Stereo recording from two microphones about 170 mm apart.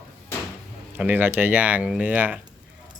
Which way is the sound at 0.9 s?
10° right (ahead or behind).